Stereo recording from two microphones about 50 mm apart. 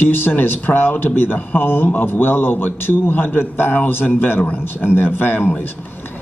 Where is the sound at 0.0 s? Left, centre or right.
Left.